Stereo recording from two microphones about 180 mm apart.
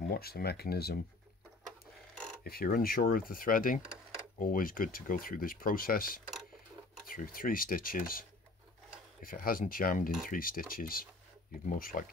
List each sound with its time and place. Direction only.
0.1 s speech: 60° left (ahead or behind)
2.4 s speech: 55° left (ahead or behind)
3.8 s a sound: 5° right (ahead or behind)
4.4 s speech: 50° left (ahead or behind)